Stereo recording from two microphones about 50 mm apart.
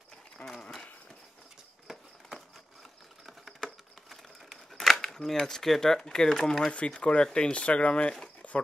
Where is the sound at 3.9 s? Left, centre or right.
Centre.